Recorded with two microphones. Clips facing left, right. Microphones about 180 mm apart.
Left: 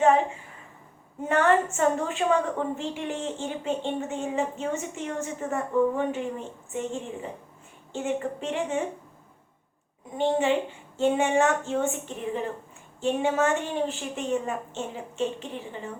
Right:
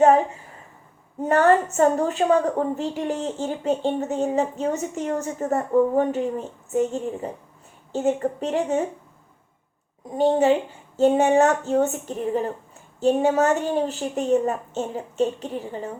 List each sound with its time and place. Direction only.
1.2 s a woman's voice: 40° right (ahead or behind)
10.2 s a woman's voice: 40° right (ahead or behind)